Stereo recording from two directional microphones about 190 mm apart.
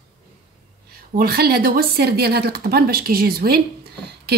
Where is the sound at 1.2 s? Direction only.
50° right (ahead or behind).